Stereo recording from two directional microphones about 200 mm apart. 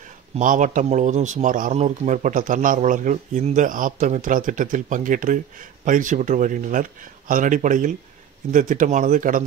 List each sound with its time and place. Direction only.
0.3 s a man's voice: 40° right (ahead or behind)